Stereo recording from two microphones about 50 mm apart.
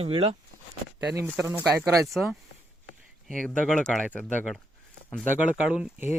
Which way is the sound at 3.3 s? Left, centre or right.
Centre.